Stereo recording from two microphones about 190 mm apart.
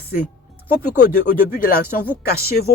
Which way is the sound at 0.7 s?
50° left (ahead or behind).